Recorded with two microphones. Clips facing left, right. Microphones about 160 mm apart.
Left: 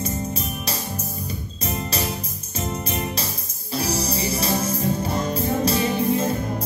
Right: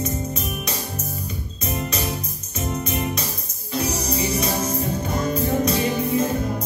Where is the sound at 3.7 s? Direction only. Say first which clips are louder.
Right 1 dB; 30° left (ahead or behind).